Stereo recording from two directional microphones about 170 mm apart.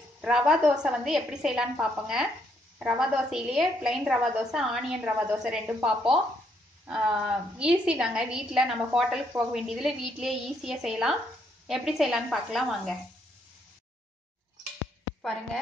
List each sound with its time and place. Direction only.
0.2 s a woman's voice: 5° right (ahead or behind)